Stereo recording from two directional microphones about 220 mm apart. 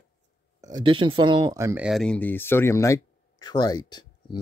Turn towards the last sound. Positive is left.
turn(degrees=20)  # may be behind; listen again after turning